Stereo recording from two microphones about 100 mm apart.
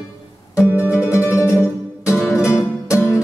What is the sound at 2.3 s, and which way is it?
Music, 30° left (ahead or behind).